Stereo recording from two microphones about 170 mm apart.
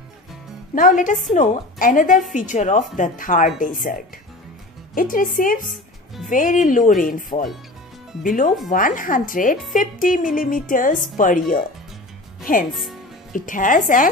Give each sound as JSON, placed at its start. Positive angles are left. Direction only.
{"t": 0.7, "sound": "speech", "side_deg": 50}
{"t": 4.9, "sound": "speech", "side_deg": 55}
{"t": 13.3, "sound": "speech", "side_deg": 50}